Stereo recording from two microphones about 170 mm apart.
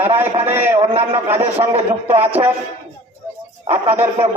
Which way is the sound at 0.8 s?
35° right (ahead or behind).